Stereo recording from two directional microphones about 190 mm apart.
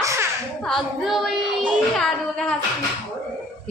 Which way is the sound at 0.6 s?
Centre (ahead or behind).